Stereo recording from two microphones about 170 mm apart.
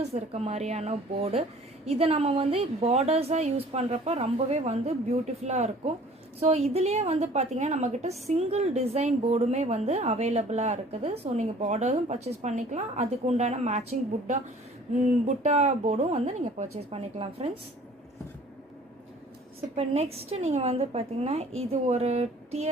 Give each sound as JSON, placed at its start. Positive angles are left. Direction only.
{"t": 0.0, "sound": "a woman's voice", "side_deg": -40}
{"t": 15.3, "sound": "a woman's voice", "side_deg": -40}
{"t": 19.7, "sound": "a woman's voice", "side_deg": -40}